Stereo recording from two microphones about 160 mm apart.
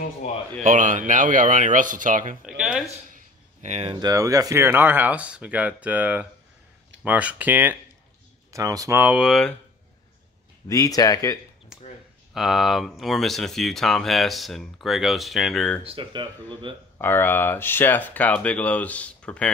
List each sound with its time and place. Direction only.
0.2 s speech: 45° left (ahead or behind)
0.7 s speech: 55° right (ahead or behind)
2.4 s speech: 5° right (ahead or behind)
3.6 s speech: 45° right (ahead or behind)
3.9 s speech: 25° right (ahead or behind)
8.5 s speech: 20° right (ahead or behind); by 9.6 s centre (ahead or behind)
10.7 s speech: 25° left (ahead or behind)
11.7 s a sound: 5° right (ahead or behind)
12.4 s speech: centre (ahead or behind)
15.8 s speech: 35° right (ahead or behind)
17.0 s speech: 15° left (ahead or behind)